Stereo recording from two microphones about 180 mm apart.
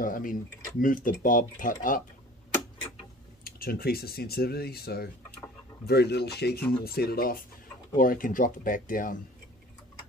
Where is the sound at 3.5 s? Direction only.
55° left (ahead or behind).